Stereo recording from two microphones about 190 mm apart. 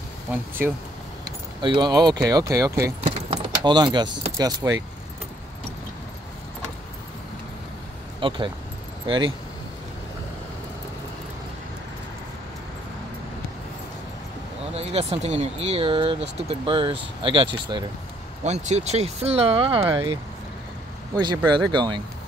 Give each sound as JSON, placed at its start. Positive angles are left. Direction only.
{"t": 0.3, "sound": "speech", "side_deg": -10}
{"t": 1.6, "sound": "speech", "side_deg": -25}
{"t": 3.0, "sound": "keys jangling", "side_deg": -30}
{"t": 3.3, "sound": "speech", "side_deg": -25}
{"t": 8.2, "sound": "speech", "side_deg": -25}
{"t": 14.7, "sound": "speech", "side_deg": -35}
{"t": 19.8, "sound": "speech", "side_deg": -15}